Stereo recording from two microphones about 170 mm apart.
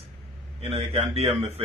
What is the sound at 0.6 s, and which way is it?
Speech, 35° right (ahead or behind).